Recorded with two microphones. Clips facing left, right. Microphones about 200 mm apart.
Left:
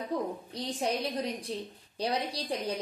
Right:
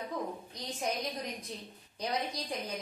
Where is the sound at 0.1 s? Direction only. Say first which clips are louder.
Left 6 dB; 35° left (ahead or behind).